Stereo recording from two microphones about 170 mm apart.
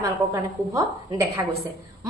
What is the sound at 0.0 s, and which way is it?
A woman's voice, 20° right (ahead or behind).